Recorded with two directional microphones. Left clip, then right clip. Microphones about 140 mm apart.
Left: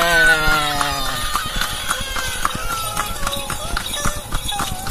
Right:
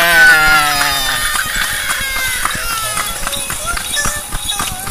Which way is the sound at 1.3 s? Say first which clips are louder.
Right 6 dB; 25° left (ahead or behind).